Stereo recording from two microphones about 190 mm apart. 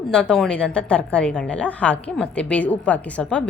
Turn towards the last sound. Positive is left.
turn(degrees=5)  # may be behind; listen again after turning